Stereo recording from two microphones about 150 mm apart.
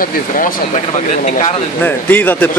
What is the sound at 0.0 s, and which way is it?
Speech, 55° left (ahead or behind).